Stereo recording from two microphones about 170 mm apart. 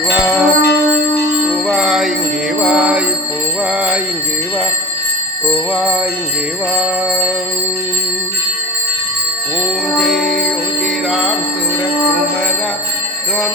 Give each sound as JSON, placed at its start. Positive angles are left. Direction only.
{"t": 0.2, "sound": "music", "side_deg": 0}
{"t": 0.6, "sound": "a sound", "side_deg": 75}
{"t": 1.6, "sound": "bell", "side_deg": 0}
{"t": 2.6, "sound": "music", "side_deg": -5}
{"t": 5.7, "sound": "music", "side_deg": -5}
{"t": 10.0, "sound": "music", "side_deg": 0}